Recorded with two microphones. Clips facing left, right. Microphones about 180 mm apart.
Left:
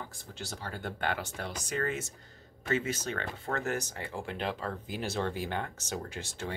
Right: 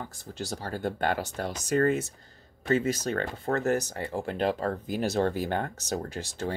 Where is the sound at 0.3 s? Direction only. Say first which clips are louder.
Right 8 dB; 40° right (ahead or behind).